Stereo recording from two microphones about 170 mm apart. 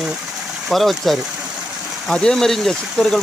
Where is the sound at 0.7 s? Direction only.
Centre (ahead or behind).